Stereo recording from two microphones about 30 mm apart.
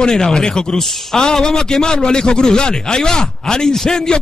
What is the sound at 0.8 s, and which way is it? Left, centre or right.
Speech, centre.